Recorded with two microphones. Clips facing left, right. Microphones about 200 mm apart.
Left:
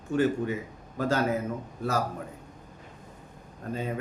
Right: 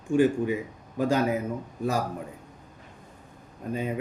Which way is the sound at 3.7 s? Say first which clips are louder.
Right 2 dB; 15° right (ahead or behind).